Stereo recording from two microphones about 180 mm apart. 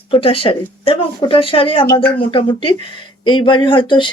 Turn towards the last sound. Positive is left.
turn(degrees=25)  # may be behind; listen again after turning